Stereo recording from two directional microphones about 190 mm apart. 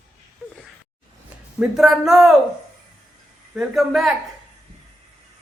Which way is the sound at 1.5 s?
5° right (ahead or behind).